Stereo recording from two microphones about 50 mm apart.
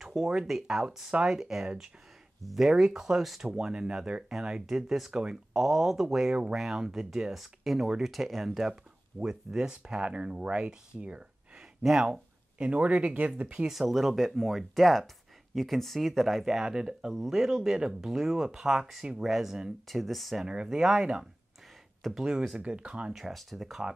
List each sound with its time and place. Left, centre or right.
0.0 s speech: centre; by 11.6 s right
11.8 s speech: centre
12.5 s speech: right
13.7 s speech: centre
19.9 s speech: centre
20.4 s speech: centre
22.0 s speech: centre
22.6 s speech: right
23.1 s speech: centre